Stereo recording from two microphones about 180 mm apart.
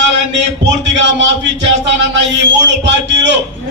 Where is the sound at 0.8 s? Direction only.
85° right.